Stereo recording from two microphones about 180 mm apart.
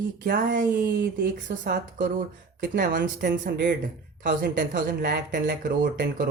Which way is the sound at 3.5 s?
65° right (ahead or behind).